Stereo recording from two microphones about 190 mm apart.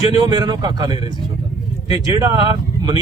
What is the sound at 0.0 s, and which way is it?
Speech, 20° right (ahead or behind).